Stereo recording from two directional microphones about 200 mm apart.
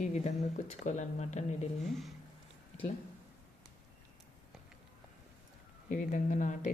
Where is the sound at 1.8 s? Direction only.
Centre (ahead or behind).